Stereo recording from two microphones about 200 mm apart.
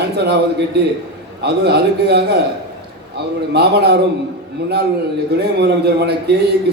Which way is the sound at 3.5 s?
55° right (ahead or behind).